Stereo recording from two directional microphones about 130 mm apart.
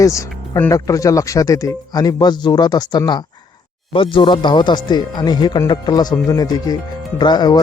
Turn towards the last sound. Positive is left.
turn(degrees=30)  # may be behind; listen again after turning